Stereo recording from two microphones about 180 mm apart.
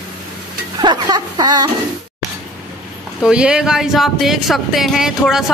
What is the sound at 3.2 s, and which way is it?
Speech, 5° right (ahead or behind).